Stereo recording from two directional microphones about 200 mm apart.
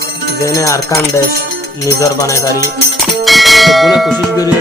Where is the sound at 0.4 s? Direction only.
15° left (ahead or behind).